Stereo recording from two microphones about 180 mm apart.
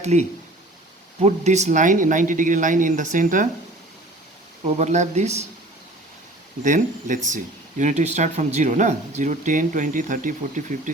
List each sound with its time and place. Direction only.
0.0 s speech: 40° right (ahead or behind)
4.6 s speech: 40° right (ahead or behind)
6.6 s speech: 45° right (ahead or behind)